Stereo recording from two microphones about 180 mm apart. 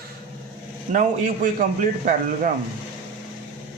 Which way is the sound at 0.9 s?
45° right (ahead or behind).